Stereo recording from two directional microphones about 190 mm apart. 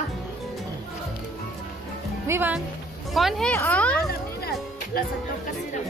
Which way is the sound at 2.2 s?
10° right (ahead or behind).